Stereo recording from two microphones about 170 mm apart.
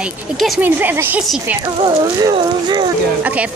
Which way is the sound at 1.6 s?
20° right (ahead or behind).